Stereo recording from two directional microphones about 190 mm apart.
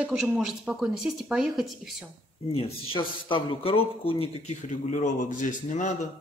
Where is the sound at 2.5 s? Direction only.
30° left (ahead or behind).